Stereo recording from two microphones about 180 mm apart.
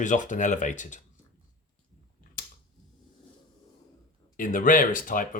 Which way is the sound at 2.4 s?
50° left (ahead or behind).